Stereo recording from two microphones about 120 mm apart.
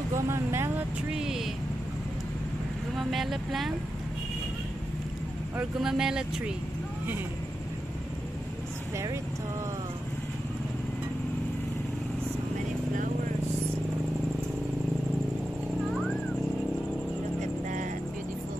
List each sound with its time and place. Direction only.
0.3 s speech: 20° right (ahead or behind)
1.1 s vehicle: 5° right (ahead or behind)
3.0 s speech: centre (ahead or behind)
5.6 s speech: 5° right (ahead or behind)
8.9 s speech: 25° right (ahead or behind)
17.4 s vehicle: 90° right